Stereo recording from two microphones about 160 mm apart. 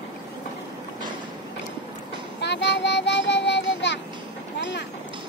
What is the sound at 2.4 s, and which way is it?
Child singing, 90° left.